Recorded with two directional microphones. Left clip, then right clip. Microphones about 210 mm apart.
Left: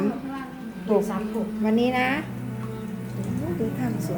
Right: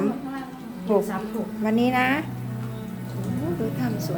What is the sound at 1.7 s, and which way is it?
Speech, 10° right (ahead or behind).